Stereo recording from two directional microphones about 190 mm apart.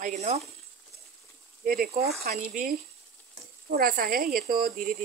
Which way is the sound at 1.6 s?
50° right (ahead or behind).